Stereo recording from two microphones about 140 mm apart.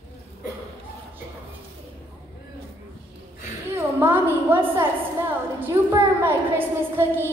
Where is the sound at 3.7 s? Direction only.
15° right (ahead or behind).